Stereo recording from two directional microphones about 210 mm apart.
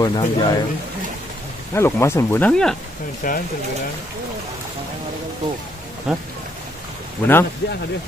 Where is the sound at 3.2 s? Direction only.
40° left (ahead or behind).